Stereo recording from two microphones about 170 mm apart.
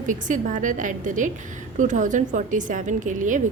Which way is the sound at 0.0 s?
50° right (ahead or behind).